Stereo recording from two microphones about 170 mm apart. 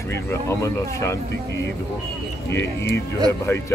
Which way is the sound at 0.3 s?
15° left (ahead or behind).